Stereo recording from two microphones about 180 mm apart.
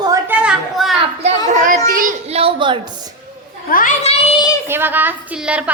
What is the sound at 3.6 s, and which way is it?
Speech, 50° left (ahead or behind).